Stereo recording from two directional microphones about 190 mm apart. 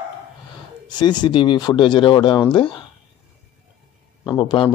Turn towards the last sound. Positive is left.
turn(degrees=25)  # may be behind; listen again after turning